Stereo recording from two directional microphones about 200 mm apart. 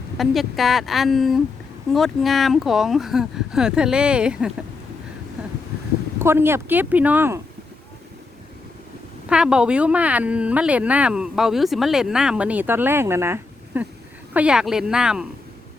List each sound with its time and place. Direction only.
0.2 s speech: centre (ahead or behind)
6.1 s speech: 10° right (ahead or behind)
9.3 s speech: 5° right (ahead or behind)